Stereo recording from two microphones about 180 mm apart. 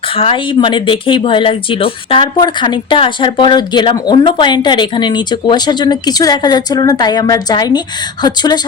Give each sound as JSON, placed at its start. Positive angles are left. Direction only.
{"t": 0.2, "sound": "speech", "side_deg": 30}